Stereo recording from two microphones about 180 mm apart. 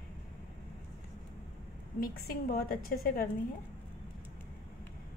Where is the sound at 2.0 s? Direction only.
55° left (ahead or behind).